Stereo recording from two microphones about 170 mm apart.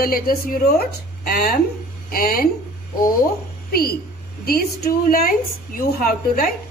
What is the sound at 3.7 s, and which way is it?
A woman's voice, 65° left (ahead or behind).